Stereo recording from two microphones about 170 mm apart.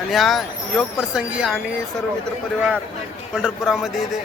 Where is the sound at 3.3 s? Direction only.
5° right (ahead or behind).